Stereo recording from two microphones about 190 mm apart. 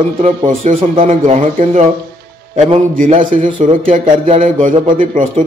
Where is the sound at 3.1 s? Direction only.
45° right (ahead or behind).